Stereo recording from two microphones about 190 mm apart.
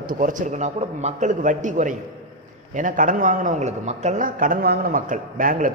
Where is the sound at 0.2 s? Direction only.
40° right (ahead or behind).